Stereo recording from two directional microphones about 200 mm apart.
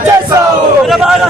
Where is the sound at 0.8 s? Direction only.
Centre (ahead or behind).